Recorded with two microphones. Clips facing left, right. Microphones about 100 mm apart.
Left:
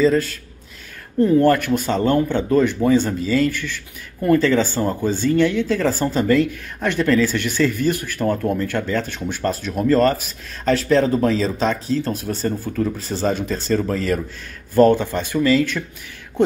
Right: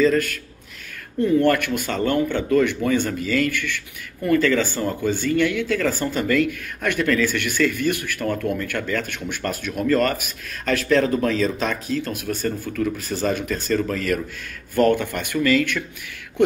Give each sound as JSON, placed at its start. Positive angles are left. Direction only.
{"t": 0.0, "sound": "speech", "side_deg": 25}